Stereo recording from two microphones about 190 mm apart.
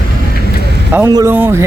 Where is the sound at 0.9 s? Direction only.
15° right (ahead or behind).